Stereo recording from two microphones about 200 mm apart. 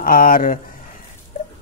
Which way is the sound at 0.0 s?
45° left (ahead or behind).